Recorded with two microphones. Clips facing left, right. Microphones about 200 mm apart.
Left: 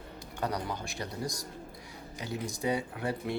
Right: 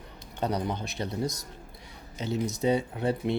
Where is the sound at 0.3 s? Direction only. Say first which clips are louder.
Right 4 dB; 20° right (ahead or behind).